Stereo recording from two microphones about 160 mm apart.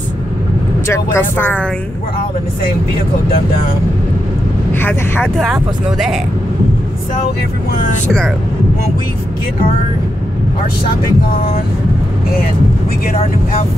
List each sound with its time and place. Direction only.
0.8 s speech: 15° left (ahead or behind)
4.7 s speech: 15° left (ahead or behind)
5.4 s speech: centre (ahead or behind)
13.1 s speech: 40° left (ahead or behind)